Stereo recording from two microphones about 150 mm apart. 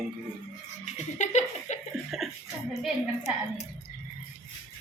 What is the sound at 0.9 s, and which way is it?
Laughter, 50° left (ahead or behind).